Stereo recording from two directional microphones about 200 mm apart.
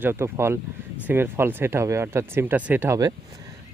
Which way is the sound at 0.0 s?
10° right (ahead or behind).